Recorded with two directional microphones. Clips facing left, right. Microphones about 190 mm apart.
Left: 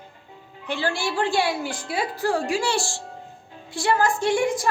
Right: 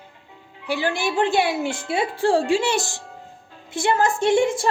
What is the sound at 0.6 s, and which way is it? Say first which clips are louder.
A woman's voice: right 3 dB; 15° right (ahead or behind).